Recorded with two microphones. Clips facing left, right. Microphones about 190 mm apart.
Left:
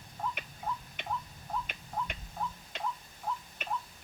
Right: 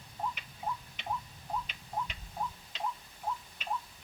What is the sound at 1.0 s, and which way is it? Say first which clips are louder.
Tick-tock: right 2 dB; 50° left (ahead or behind).